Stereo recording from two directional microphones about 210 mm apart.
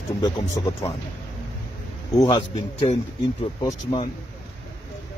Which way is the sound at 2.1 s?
20° left (ahead or behind).